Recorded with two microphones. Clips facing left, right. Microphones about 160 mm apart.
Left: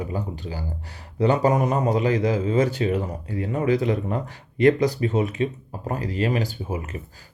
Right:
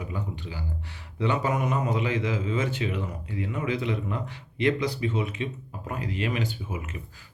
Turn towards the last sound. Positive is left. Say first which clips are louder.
# left 5 dB
turn(degrees=35)  # may be behind; listen again after turning